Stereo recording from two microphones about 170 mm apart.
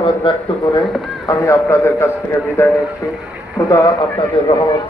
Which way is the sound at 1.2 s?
15° left (ahead or behind).